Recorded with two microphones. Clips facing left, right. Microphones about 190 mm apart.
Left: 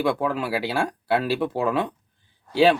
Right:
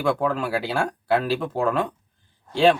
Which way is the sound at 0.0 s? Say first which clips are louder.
Right 1 dB; 5° left (ahead or behind).